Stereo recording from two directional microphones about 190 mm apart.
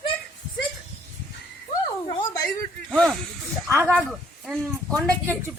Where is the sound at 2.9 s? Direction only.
Centre (ahead or behind).